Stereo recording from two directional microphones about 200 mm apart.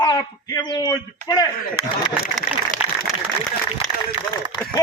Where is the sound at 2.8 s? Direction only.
10° right (ahead or behind).